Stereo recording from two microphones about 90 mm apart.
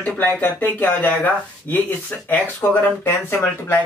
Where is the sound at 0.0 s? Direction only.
20° left (ahead or behind).